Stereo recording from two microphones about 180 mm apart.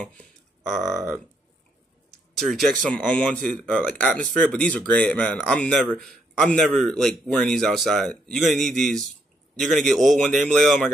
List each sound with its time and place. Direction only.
0.2 s a sound: centre (ahead or behind)
0.8 s speech: 15° right (ahead or behind)
2.3 s speech: centre (ahead or behind)